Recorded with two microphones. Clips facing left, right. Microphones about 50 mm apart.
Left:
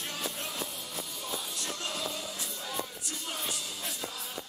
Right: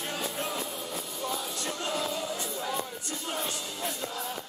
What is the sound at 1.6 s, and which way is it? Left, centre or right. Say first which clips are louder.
Music: right 7 dB; centre.